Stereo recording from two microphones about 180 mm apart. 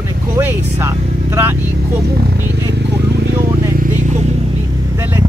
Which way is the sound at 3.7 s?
45° right (ahead or behind).